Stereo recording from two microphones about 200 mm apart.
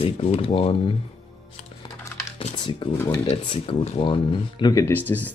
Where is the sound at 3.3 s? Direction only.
30° left (ahead or behind).